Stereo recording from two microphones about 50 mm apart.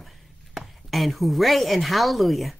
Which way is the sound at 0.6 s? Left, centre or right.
Centre.